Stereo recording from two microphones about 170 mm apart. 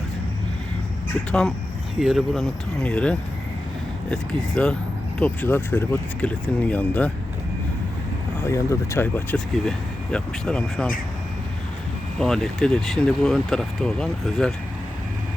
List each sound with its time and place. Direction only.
1.3 s speech: 5° left (ahead or behind)
8.4 s speech: 15° left (ahead or behind)
12.2 s speech: 5° left (ahead or behind)